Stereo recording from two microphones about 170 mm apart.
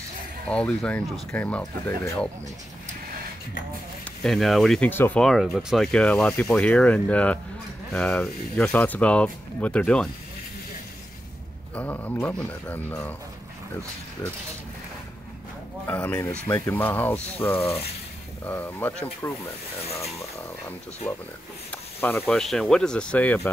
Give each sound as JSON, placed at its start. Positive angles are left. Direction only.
{"t": 0.5, "sound": "speech", "side_deg": 5}
{"t": 4.2, "sound": "speech", "side_deg": 0}
{"t": 11.7, "sound": "speech", "side_deg": 10}
{"t": 15.9, "sound": "speech", "side_deg": 10}